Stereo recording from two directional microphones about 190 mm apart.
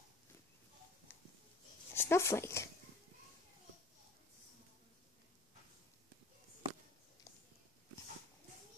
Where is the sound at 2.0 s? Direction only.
15° left (ahead or behind).